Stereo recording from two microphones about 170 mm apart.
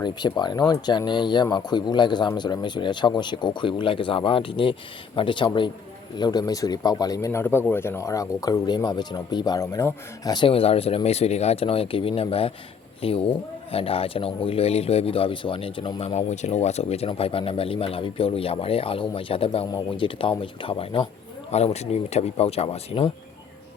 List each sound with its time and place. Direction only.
0.0 s speech: 25° left (ahead or behind)